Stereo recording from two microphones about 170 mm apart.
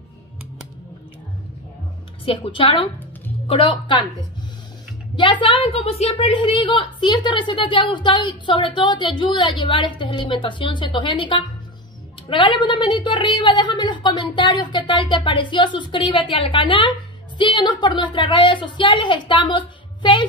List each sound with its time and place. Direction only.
2.2 s a woman's voice: 30° left (ahead or behind)
5.1 s a woman's voice: 30° left (ahead or behind)